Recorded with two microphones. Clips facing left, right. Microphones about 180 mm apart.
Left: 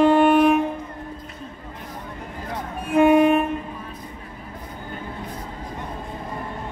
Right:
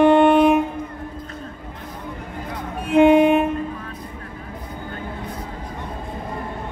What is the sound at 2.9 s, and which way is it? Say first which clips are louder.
Train: right 2 dB; 25° right (ahead or behind).